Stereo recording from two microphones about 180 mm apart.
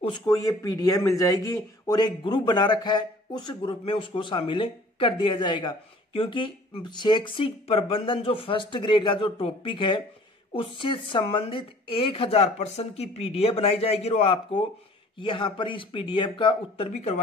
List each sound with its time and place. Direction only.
0.0 s a man's voice: 25° left (ahead or behind)